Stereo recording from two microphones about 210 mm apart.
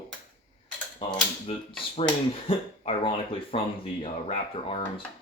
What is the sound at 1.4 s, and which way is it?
Speech, 30° left (ahead or behind).